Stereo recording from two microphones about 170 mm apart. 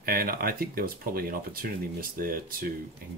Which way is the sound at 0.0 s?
60° right (ahead or behind).